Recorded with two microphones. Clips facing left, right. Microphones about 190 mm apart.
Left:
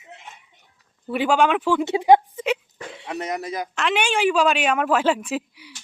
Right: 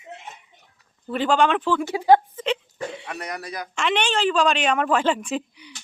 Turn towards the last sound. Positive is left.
turn(degrees=5)  # may be behind; listen again after turning